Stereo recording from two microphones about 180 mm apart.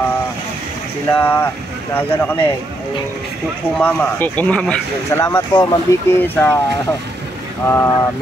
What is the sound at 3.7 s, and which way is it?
Speech, 10° left (ahead or behind).